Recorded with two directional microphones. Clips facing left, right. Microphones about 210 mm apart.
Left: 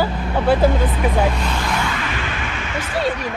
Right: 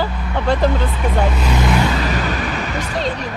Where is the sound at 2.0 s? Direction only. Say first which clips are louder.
Right 5 dB; 40° right (ahead or behind).